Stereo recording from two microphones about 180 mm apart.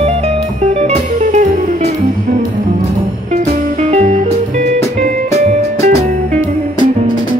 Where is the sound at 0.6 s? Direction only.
40° right (ahead or behind).